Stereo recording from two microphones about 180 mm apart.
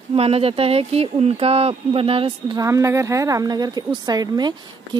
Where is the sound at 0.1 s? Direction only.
35° right (ahead or behind).